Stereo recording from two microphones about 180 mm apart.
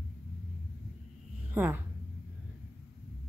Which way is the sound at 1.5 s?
10° right (ahead or behind).